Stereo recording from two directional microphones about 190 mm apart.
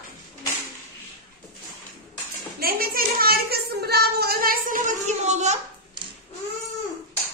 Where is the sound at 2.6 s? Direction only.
50° right (ahead or behind).